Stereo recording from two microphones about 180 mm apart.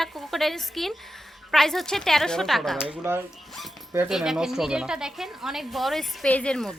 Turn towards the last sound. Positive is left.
turn(degrees=5)  # may be behind; listen again after turning